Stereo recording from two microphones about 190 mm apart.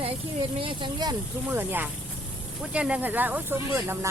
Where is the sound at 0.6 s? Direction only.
25° right (ahead or behind).